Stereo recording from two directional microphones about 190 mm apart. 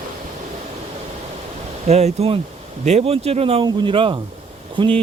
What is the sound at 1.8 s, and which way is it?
Speech, 35° right (ahead or behind).